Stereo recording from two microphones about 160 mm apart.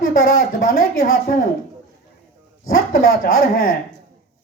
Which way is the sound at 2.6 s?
65° left (ahead or behind).